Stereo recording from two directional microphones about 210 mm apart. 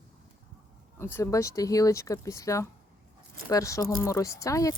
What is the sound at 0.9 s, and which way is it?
Speech, 10° left (ahead or behind).